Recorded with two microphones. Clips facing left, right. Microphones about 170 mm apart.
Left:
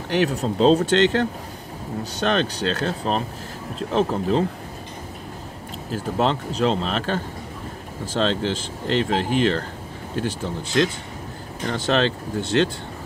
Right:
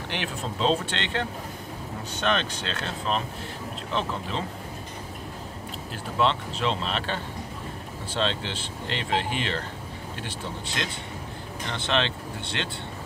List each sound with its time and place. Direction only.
0.1 s speech: 40° left (ahead or behind)
5.9 s speech: 40° left (ahead or behind)